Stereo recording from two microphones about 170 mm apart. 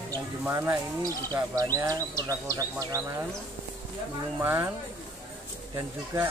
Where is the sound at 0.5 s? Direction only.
15° right (ahead or behind).